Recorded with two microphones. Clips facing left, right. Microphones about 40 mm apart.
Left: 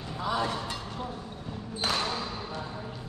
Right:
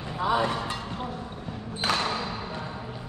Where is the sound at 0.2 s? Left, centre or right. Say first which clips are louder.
Right 5 dB; right.